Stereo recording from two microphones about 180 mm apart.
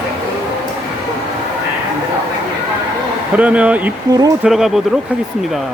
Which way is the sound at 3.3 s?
5° right (ahead or behind).